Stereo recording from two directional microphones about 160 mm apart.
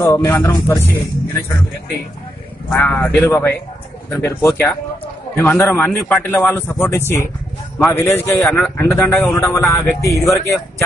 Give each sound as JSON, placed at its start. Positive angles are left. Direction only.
{"t": 0.0, "sound": "a man's voice", "side_deg": 20}
{"t": 2.7, "sound": "a man's voice", "side_deg": 10}
{"t": 8.4, "sound": "a man's voice", "side_deg": 0}
{"t": 8.7, "sound": "a man's voice", "side_deg": 15}